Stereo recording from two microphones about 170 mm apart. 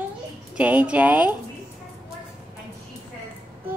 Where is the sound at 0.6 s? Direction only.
10° right (ahead or behind).